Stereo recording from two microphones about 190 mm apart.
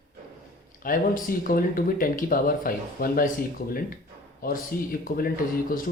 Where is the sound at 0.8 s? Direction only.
45° left (ahead or behind).